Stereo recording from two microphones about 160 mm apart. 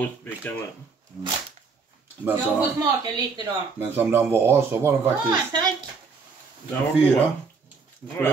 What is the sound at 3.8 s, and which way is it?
Speech, 15° right (ahead or behind).